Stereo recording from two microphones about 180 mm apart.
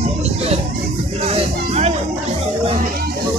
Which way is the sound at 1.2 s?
35° right (ahead or behind).